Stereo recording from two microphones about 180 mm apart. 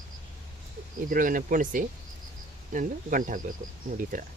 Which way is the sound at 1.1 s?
50° right (ahead or behind).